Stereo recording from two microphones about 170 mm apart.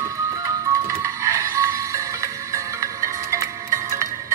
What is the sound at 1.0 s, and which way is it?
Music, 20° right (ahead or behind).